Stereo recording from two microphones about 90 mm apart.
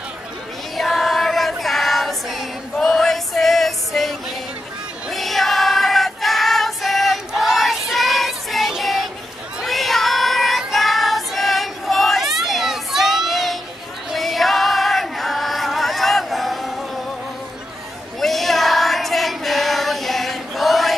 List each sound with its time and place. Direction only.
0.7 s choir: centre (ahead or behind)
5.1 s female singing: centre (ahead or behind)
9.6 s child singing: centre (ahead or behind)
14.1 s choir: centre (ahead or behind)
18.2 s child singing: centre (ahead or behind)